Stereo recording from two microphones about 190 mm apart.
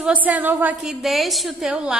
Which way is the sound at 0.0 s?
5° right (ahead or behind).